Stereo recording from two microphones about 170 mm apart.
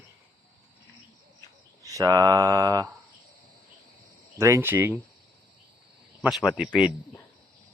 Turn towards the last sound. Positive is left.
turn(degrees=-5)  # may be behind; listen again after turning